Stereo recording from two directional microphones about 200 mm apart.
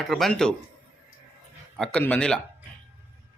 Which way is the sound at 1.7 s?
5° left (ahead or behind).